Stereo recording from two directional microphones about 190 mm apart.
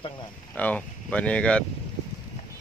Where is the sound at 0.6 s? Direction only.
5° left (ahead or behind).